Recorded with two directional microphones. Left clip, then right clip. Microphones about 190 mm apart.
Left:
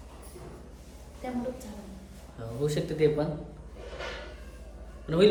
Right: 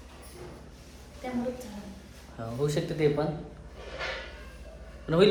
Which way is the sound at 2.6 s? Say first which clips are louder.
Left 1 dB; 5° left (ahead or behind).